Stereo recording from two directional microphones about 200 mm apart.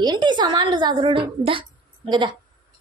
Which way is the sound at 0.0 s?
20° right (ahead or behind).